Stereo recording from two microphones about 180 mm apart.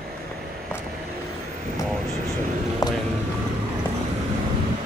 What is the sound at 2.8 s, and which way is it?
Vehicle, 20° left (ahead or behind).